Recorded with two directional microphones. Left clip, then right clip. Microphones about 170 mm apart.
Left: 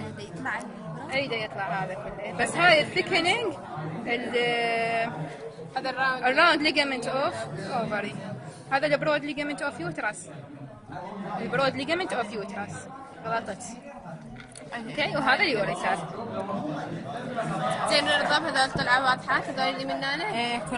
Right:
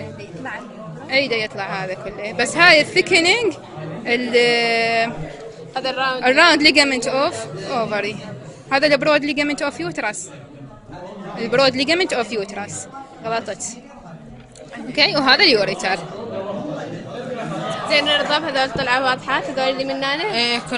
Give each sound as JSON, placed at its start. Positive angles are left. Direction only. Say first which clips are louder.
{"t": 1.1, "sound": "a woman's voice", "louder": "right 10 dB", "side_deg": -45}
{"t": 11.5, "sound": "a man's voice", "louder": "right 10 dB", "side_deg": -45}
{"t": 15.0, "sound": "a man's voice", "louder": "right 10 dB", "side_deg": -45}
{"t": 17.8, "sound": "a woman's voice", "louder": "right 7 dB", "side_deg": -35}
{"t": 20.3, "sound": "a sound", "louder": "right 9 dB", "side_deg": -10}